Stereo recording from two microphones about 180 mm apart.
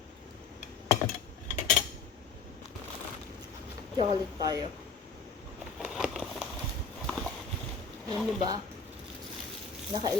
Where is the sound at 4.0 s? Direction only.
20° right (ahead or behind).